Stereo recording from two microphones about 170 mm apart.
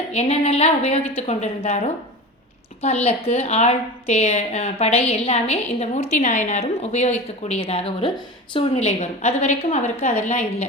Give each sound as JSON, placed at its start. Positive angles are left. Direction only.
{"t": 0.1, "sound": "a woman's voice", "side_deg": 35}